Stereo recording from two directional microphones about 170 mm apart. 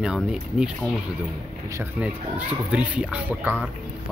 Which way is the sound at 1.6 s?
15° right (ahead or behind).